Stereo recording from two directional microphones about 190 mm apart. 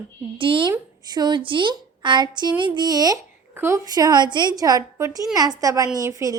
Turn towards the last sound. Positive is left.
turn(degrees=-15)  # may be behind; listen again after turning